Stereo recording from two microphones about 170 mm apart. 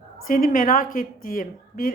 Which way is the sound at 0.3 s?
55° left (ahead or behind).